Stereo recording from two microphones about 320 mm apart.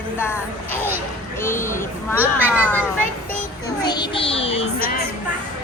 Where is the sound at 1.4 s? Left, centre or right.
Centre.